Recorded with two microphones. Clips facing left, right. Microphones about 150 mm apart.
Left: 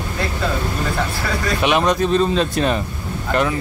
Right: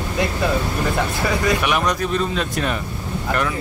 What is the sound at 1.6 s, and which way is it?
Speech, 25° left (ahead or behind).